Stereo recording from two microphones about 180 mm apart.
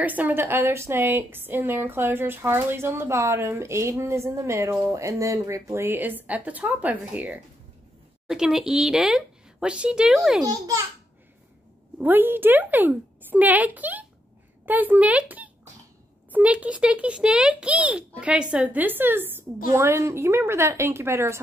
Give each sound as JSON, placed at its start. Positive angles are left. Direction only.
{"t": 0.0, "sound": "a woman's voice", "side_deg": -10}
{"t": 10.4, "sound": "a child's voice", "side_deg": -20}
{"t": 12.0, "sound": "a woman's voice", "side_deg": -10}